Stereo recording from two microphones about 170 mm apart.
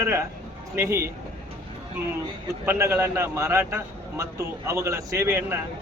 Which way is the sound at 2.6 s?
15° right (ahead or behind).